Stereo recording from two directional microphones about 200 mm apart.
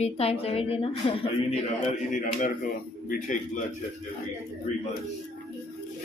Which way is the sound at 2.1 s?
40° left (ahead or behind).